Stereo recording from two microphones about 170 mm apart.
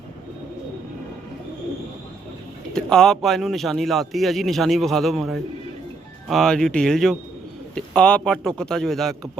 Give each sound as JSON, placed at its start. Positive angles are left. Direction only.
{"t": 2.7, "sound": "a man's voice", "side_deg": 5}